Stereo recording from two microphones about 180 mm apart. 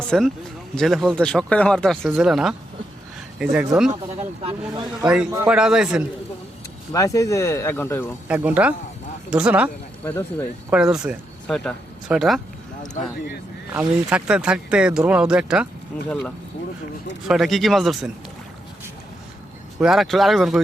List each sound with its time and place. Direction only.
0.0 s speech: 5° left (ahead or behind)
4.9 s speech: 5° right (ahead or behind)
5.5 s speech: 5° right (ahead or behind)
6.9 s speech: 20° left (ahead or behind)
8.3 s speech: 10° right (ahead or behind)
10.0 s speech: 10° left (ahead or behind)
10.7 s speech: 5° right (ahead or behind)
12.9 s speech: 55° left (ahead or behind)
13.7 s speech: 5° right (ahead or behind)
16.0 s speech: 5° left (ahead or behind)
19.8 s speech: centre (ahead or behind)